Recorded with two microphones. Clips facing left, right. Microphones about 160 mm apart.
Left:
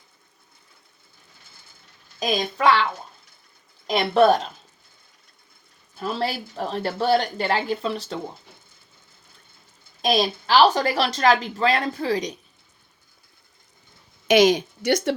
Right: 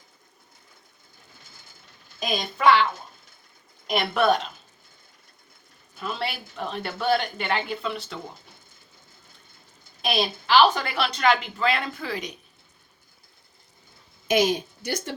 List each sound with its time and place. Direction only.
2.1 s a woman's voice: 35° left (ahead or behind)
3.8 s a woman's voice: 30° left (ahead or behind)
6.0 s a woman's voice: 35° left (ahead or behind)
10.0 s a woman's voice: 40° left (ahead or behind)
14.3 s speech: 90° left